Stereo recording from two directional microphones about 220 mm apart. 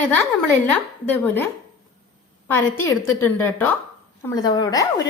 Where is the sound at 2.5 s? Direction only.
10° left (ahead or behind).